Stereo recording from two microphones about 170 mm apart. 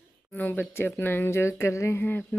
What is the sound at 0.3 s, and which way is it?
Speech, 10° left (ahead or behind).